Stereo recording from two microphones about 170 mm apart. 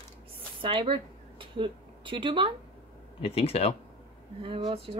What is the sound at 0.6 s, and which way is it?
Speech, 30° right (ahead or behind).